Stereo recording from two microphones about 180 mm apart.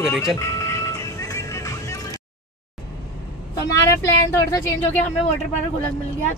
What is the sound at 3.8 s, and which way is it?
Speech, 15° left (ahead or behind).